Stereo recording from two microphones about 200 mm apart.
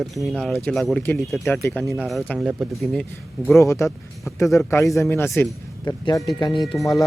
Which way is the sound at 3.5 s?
15° left (ahead or behind).